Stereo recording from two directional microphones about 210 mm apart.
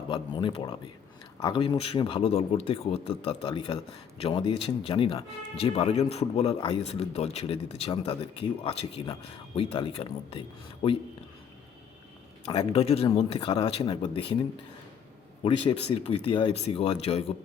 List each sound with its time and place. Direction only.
0.1 s speech: 25° left (ahead or behind)
12.5 s speech: 25° left (ahead or behind)
16.2 s speech: 25° left (ahead or behind)